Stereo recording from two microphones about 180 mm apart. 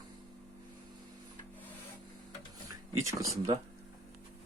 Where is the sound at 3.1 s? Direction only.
20° right (ahead or behind).